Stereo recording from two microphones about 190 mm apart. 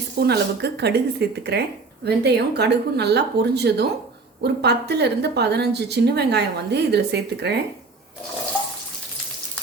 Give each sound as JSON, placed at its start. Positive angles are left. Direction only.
{"t": 0.2, "sound": "a woman's voice", "side_deg": -60}